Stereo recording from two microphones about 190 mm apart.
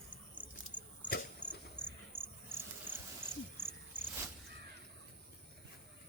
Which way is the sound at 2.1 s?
30° right (ahead or behind).